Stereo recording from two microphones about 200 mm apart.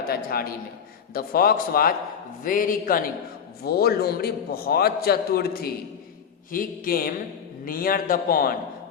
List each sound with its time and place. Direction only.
0.1 s a man's voice: 50° left (ahead or behind)